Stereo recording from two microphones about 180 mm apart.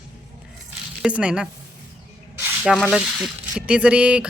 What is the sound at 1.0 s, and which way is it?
Speech, 5° right (ahead or behind).